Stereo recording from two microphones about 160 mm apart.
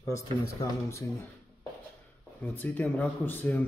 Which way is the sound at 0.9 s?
20° left (ahead or behind).